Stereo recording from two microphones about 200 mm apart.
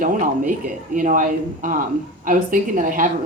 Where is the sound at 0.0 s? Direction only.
40° right (ahead or behind).